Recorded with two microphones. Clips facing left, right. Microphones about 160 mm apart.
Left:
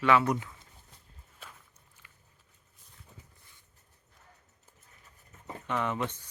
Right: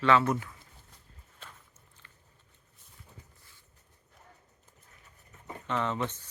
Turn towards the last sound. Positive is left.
turn(degrees=10)  # may be behind; listen again after turning